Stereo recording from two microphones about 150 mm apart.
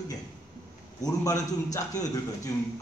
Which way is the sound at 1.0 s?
25° left (ahead or behind).